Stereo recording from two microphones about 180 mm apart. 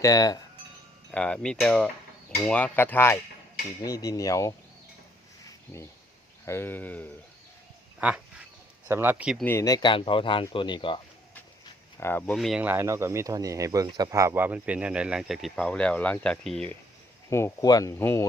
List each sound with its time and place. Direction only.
0.0 s speech: 20° left (ahead or behind)
1.1 s cutlery: 5° left (ahead or behind)
2.5 s speech: 5° left (ahead or behind)
6.4 s speech: 15° left (ahead or behind)
7.9 s speech: 5° right (ahead or behind)
9.4 s speech: 15° left (ahead or behind)
11.9 s speech: 10° left (ahead or behind)
17.2 s speech: 15° left (ahead or behind)